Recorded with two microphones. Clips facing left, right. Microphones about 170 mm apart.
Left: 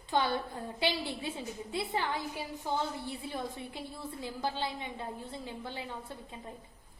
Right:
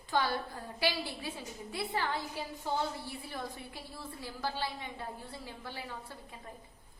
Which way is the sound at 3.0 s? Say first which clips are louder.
Left 3 dB; 20° left (ahead or behind).